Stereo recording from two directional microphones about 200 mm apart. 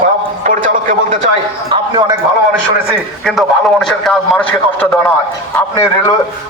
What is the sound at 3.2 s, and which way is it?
A man's voice, centre (ahead or behind).